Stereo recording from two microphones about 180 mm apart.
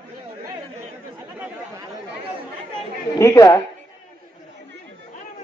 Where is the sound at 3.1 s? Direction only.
20° left (ahead or behind).